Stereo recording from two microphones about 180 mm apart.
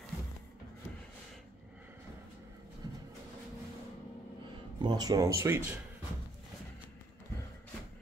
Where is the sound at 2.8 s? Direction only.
20° right (ahead or behind).